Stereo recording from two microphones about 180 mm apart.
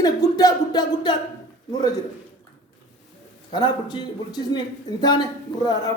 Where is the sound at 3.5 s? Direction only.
25° left (ahead or behind).